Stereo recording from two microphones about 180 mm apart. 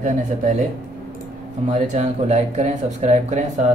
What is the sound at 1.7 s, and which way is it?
Speech, 40° right (ahead or behind).